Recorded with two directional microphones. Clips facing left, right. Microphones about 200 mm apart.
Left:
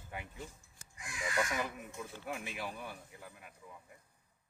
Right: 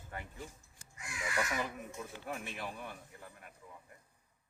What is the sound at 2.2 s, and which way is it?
A man's voice, 5° left (ahead or behind).